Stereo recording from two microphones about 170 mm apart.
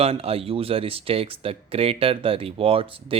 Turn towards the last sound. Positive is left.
turn(degrees=-30)  # may be behind; listen again after turning